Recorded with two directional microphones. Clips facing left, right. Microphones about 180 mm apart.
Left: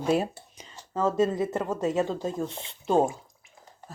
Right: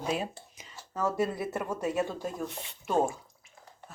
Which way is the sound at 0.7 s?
20° left (ahead or behind).